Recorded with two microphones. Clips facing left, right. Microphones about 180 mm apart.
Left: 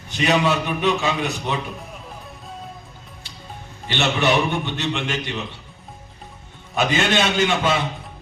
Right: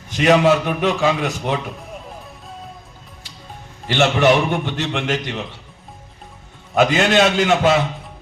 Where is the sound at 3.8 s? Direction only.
90° right.